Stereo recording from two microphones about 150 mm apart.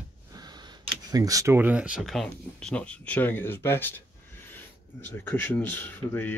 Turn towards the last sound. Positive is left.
turn(degrees=10)  # may be behind; listen again after turning